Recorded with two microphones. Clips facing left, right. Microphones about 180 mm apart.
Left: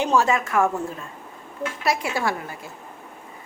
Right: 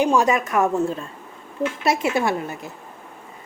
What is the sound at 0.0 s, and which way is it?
A woman's voice, 15° right (ahead or behind).